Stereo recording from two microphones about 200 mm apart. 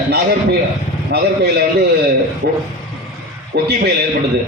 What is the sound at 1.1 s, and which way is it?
A man's voice, 55° right (ahead or behind).